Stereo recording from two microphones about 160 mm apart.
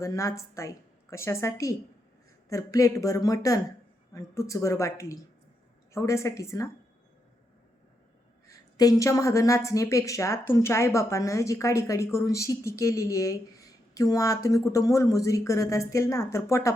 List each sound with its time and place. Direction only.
0.0 s a woman's voice: 20° left (ahead or behind)
8.4 s a woman's voice: 20° left (ahead or behind)